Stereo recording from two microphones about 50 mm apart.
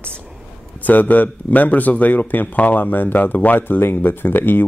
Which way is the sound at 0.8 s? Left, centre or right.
Left.